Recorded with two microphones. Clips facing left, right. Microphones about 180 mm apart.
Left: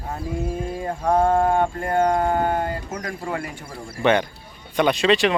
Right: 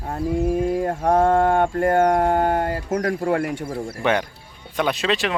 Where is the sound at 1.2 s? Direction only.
70° right (ahead or behind).